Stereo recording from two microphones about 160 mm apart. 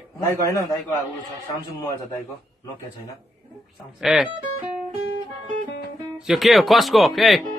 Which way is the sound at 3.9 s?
5° right (ahead or behind).